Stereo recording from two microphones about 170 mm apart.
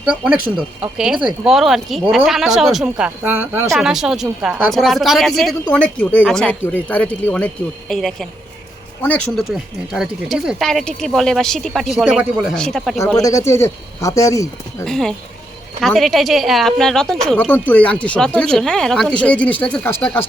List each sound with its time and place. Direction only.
0.0 s speech: 5° right (ahead or behind)
13.2 s speech: 15° left (ahead or behind)
14.8 s speech: 5° left (ahead or behind)